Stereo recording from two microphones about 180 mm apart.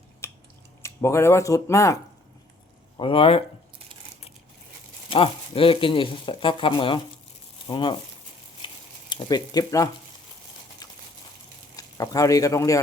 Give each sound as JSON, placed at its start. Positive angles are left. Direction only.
{"t": 0.2, "sound": "a sound", "side_deg": 15}
{"t": 0.8, "sound": "speech", "side_deg": 15}
{"t": 3.0, "sound": "speech", "side_deg": 30}
{"t": 5.0, "sound": "speech", "side_deg": 30}
{"t": 8.6, "sound": "a sound", "side_deg": 25}
{"t": 11.8, "sound": "speech", "side_deg": 20}